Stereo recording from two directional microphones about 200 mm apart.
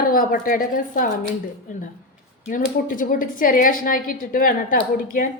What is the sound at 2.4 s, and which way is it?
A woman's voice, 40° left (ahead or behind).